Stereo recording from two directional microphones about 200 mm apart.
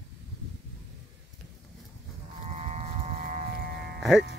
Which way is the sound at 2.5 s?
35° right (ahead or behind).